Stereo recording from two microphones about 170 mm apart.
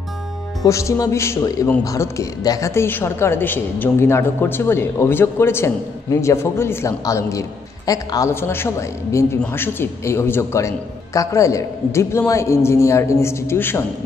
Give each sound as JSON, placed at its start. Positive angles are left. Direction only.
{"t": 0.7, "sound": "a woman's voice", "side_deg": 20}